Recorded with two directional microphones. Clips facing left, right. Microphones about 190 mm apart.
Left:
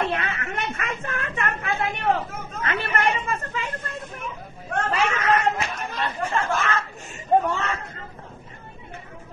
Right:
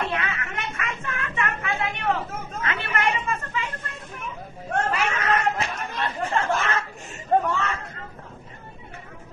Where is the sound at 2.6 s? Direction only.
40° left (ahead or behind).